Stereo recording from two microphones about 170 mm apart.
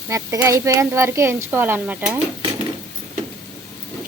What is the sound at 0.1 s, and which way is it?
Speech, 15° right (ahead or behind).